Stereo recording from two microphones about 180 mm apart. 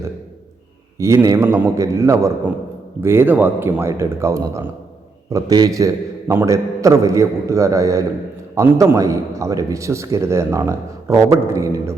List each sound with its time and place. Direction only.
0.9 s a man's voice: 15° right (ahead or behind)